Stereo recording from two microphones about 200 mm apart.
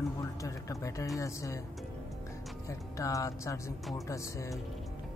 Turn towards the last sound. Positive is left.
turn(degrees=15)  # may be behind; listen again after turning